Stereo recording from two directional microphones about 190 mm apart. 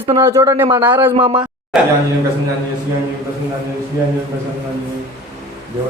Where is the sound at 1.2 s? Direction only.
30° right (ahead or behind).